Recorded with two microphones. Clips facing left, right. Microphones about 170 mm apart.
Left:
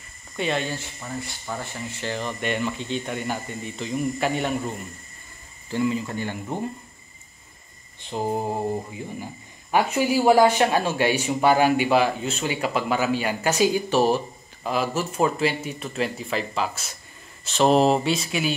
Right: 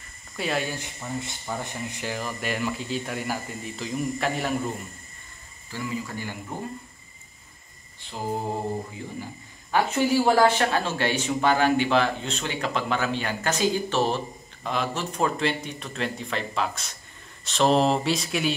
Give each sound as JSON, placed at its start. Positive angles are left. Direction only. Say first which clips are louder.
{"t": 0.4, "sound": "speech", "louder": "left 2 dB", "side_deg": -5}
{"t": 5.7, "sound": "speech", "louder": "left 7 dB", "side_deg": 25}
{"t": 8.0, "sound": "speech", "louder": "left 8 dB", "side_deg": 20}
{"t": 9.7, "sound": "a man's voice", "louder": "left 1 dB", "side_deg": 10}